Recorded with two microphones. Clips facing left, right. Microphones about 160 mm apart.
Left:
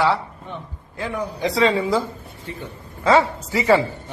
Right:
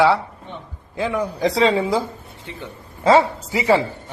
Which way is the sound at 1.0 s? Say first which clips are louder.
Right 4 dB; 90° right.